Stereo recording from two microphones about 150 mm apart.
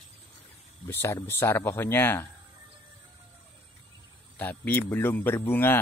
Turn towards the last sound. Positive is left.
turn(degrees=15)  # may be behind; listen again after turning